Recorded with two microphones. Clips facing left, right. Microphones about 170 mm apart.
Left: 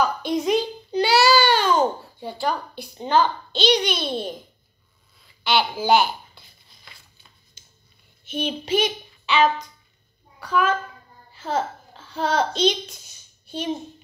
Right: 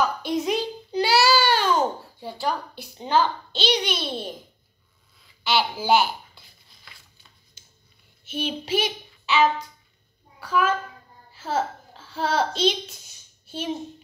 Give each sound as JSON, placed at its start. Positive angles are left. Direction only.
{"t": 0.0, "sound": "a sound", "side_deg": -5}
{"t": 2.1, "sound": "a child's voice", "side_deg": -5}
{"t": 5.4, "sound": "a child's voice", "side_deg": -5}
{"t": 6.9, "sound": "shuffling cards", "side_deg": 20}
{"t": 8.3, "sound": "a child's voice", "side_deg": -5}